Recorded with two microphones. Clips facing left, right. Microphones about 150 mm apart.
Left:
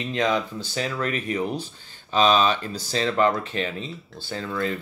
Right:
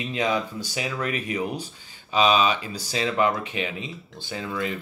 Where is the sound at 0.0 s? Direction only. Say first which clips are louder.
Left 2 dB; 10° right (ahead or behind).